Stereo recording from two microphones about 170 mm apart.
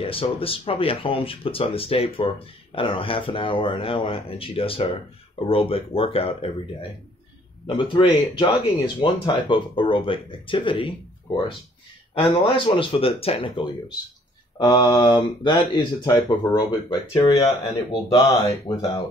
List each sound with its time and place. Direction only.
0.0 s speech: 35° left (ahead or behind)
7.6 s speech: 30° left (ahead or behind)
17.4 s speech: 35° left (ahead or behind)
18.1 s speech: 20° left (ahead or behind)